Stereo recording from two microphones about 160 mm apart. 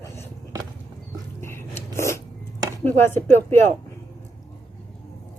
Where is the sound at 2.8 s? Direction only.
15° left (ahead or behind).